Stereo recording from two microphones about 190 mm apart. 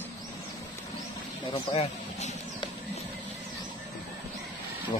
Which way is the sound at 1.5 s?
30° left (ahead or behind).